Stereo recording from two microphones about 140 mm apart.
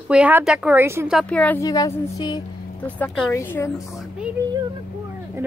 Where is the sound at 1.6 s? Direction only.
25° left (ahead or behind).